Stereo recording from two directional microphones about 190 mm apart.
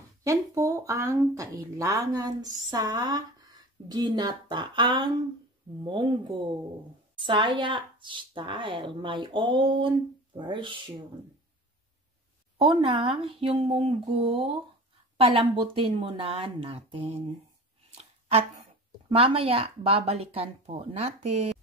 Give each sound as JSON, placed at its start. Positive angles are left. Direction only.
{"t": 0.2, "sound": "speech", "side_deg": -15}
{"t": 12.5, "sound": "speech", "side_deg": -25}
{"t": 19.0, "sound": "speech", "side_deg": -30}